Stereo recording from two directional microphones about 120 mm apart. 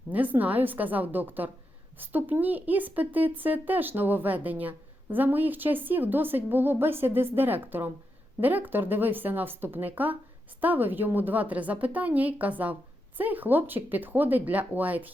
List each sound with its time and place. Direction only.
0.1 s a woman's voice: 15° right (ahead or behind)